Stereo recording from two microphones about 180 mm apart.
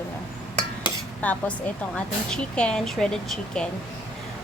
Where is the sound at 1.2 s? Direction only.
10° left (ahead or behind).